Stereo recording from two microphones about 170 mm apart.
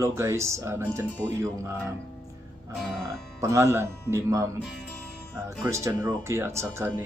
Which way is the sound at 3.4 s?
15° right (ahead or behind).